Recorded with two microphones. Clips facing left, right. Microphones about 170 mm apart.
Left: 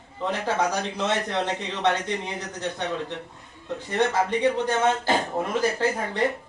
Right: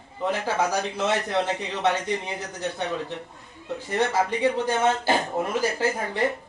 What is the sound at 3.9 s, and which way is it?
Speech, 5° right (ahead or behind).